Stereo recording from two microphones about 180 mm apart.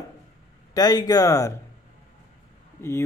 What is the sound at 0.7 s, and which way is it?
Speech, 20° left (ahead or behind).